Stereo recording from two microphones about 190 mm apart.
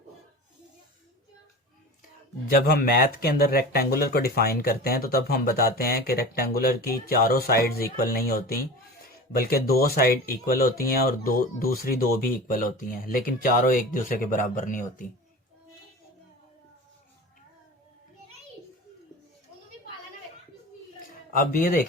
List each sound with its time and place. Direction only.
2.5 s speech: 50° left (ahead or behind)
21.3 s speech: 45° left (ahead or behind)